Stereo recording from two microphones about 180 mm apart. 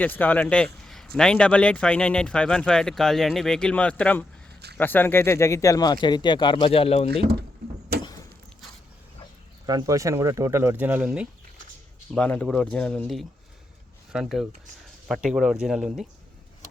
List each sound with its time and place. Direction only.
0.0 s speech: 10° left (ahead or behind); by 7.1 s 35° left (ahead or behind)
9.6 s speech: 20° right (ahead or behind)
12.1 s speech: 5° left (ahead or behind)